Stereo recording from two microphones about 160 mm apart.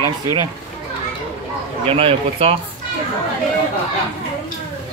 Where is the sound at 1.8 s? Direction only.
35° right (ahead or behind).